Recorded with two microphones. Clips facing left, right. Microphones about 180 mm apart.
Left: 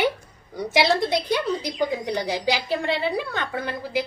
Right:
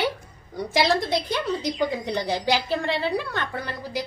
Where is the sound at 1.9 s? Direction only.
15° left (ahead or behind).